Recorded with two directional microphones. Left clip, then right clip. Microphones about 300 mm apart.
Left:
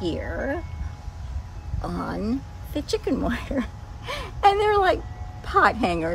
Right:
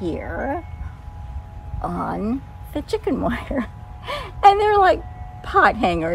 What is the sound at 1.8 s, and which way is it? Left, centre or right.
A woman's voice, centre.